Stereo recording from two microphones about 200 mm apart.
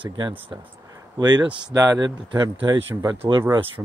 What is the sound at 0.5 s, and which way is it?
Speech, 20° right (ahead or behind).